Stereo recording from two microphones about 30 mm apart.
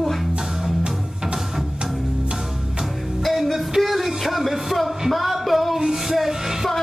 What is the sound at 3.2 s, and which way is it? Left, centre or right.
Music, centre.